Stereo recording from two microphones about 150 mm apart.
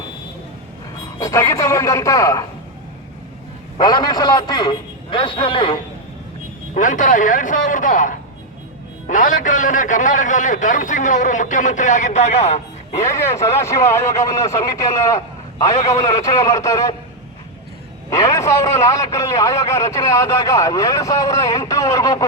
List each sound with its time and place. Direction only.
1.2 s a man's voice: 20° left (ahead or behind)
3.8 s a man's voice: 25° left (ahead or behind)
6.7 s a man's voice: 60° left (ahead or behind)
13.1 s a man's voice: 15° left (ahead or behind)
18.1 s a man's voice: 20° left (ahead or behind)